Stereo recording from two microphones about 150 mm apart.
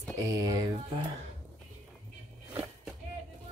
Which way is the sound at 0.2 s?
25° right (ahead or behind).